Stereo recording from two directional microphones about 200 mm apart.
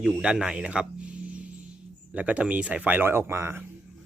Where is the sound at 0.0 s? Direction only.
5° right (ahead or behind).